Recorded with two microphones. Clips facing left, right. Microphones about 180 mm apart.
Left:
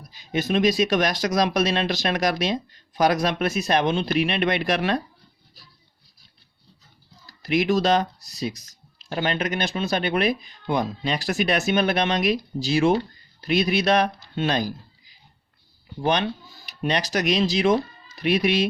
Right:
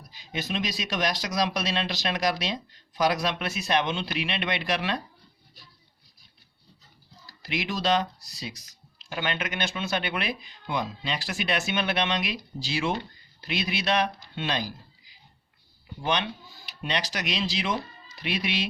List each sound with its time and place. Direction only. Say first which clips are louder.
0.1 s speech: left 9 dB; 50° left (ahead or behind)
7.4 s speech: left 8 dB; 45° left (ahead or behind)
16.0 s speech: left 5 dB; 45° left (ahead or behind)